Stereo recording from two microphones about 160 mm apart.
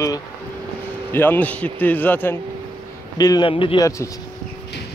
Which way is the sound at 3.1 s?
25° left (ahead or behind).